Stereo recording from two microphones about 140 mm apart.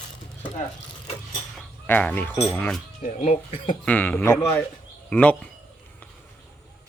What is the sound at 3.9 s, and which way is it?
Speech, 15° left (ahead or behind).